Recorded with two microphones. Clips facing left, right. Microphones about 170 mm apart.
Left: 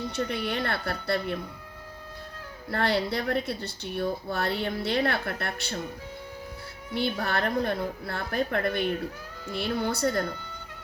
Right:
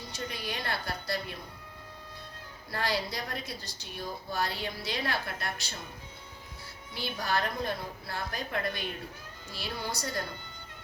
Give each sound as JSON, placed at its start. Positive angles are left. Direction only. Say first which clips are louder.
{"t": 0.0, "sound": "speech", "louder": "left 9 dB", "side_deg": 60}
{"t": 2.6, "sound": "speech", "louder": "left 6 dB", "side_deg": 60}
{"t": 6.9, "sound": "speech", "louder": "left 5 dB", "side_deg": 60}